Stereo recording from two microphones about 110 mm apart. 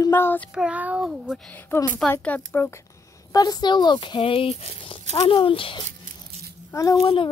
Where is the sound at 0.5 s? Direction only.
10° right (ahead or behind).